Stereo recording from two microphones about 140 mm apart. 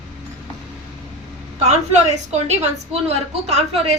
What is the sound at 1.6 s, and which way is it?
Speech, 50° right (ahead or behind).